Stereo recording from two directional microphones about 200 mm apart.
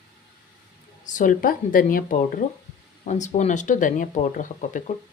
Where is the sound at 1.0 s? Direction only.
40° left (ahead or behind).